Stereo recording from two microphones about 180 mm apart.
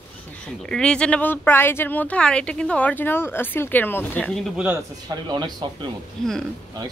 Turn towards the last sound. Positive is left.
turn(degrees=0)  # may be behind; listen again after turning